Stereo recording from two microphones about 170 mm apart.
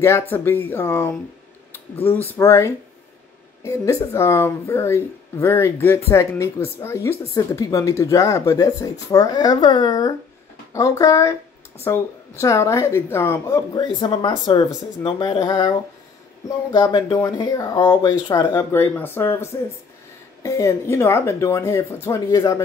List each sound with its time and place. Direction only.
0.0 s a woman's voice: 15° left (ahead or behind)